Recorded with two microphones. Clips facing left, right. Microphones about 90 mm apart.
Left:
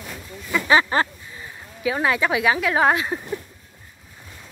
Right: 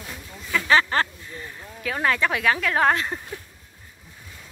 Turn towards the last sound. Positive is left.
turn(degrees=10)  # may be behind; listen again after turning